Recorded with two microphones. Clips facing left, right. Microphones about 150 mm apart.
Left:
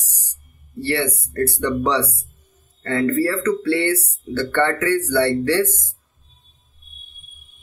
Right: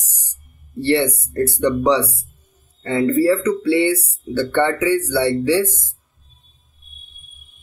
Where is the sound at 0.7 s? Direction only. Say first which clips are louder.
Right 5 dB; 25° right (ahead or behind).